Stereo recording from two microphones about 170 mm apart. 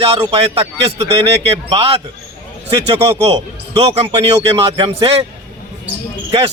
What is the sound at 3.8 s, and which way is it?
Speech, 35° right (ahead or behind).